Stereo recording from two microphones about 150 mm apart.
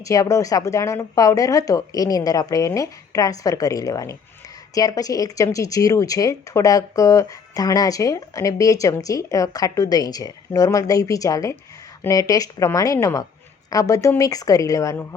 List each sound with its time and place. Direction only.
0.0 s speech: 20° left (ahead or behind)